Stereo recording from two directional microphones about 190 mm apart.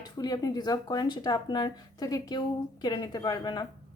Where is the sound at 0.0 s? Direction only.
20° left (ahead or behind).